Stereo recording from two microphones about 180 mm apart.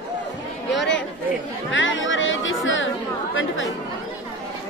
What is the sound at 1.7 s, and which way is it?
Speech, 90° left.